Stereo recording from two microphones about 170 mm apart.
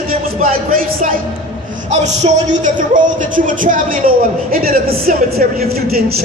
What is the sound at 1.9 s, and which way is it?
Speech, 45° right (ahead or behind).